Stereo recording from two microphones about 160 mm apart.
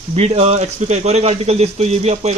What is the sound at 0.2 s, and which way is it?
Speech, 45° right (ahead or behind).